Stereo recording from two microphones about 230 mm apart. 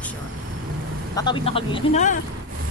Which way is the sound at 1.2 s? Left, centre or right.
Left.